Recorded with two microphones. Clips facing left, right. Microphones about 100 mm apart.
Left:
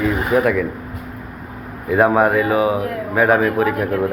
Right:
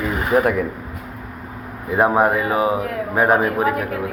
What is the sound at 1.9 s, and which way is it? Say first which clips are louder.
Speech: left 2 dB; 25° right (ahead or behind).